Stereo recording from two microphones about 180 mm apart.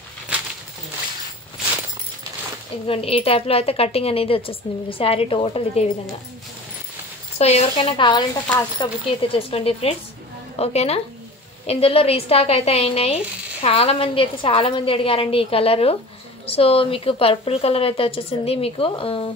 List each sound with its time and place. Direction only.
2.9 s a woman's voice: 30° left (ahead or behind)
7.3 s a woman's voice: 35° left (ahead or behind)